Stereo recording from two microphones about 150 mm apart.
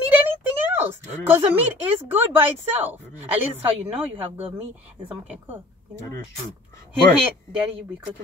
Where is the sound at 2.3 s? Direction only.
15° right (ahead or behind).